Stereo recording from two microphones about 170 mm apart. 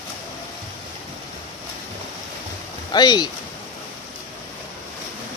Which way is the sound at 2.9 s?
25° left (ahead or behind).